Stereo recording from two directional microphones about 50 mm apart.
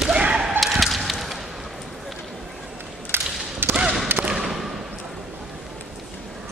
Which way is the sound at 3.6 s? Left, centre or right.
Right.